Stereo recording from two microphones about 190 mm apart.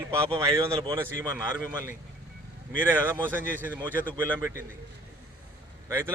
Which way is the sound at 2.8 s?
10° right (ahead or behind).